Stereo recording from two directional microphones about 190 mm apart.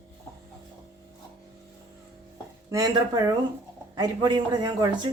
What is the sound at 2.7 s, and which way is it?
Speech, 20° right (ahead or behind).